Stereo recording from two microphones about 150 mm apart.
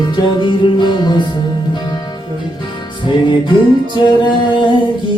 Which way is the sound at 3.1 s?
30° left (ahead or behind).